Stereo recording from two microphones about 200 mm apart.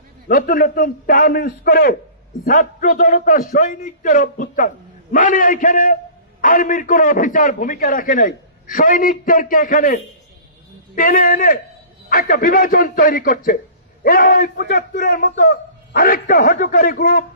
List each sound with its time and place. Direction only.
0.3 s a man's voice: 45° left (ahead or behind)